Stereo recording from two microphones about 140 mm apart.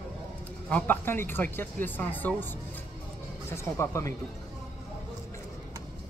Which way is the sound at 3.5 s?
20° left (ahead or behind).